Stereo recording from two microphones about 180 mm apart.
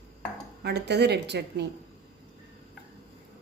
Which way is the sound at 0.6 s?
65° right (ahead or behind).